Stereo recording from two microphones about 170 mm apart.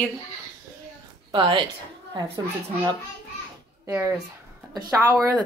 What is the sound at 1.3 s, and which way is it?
Speech, 30° right (ahead or behind).